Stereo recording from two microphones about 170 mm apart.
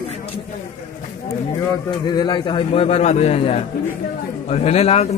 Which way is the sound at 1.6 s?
25° left (ahead or behind).